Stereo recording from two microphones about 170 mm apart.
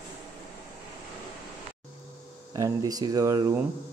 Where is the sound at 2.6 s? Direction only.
20° right (ahead or behind).